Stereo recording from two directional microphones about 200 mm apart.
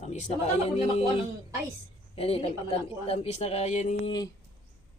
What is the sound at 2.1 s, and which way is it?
A woman's voice, 30° left (ahead or behind).